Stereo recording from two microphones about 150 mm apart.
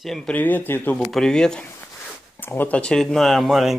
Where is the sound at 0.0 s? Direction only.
5° left (ahead or behind).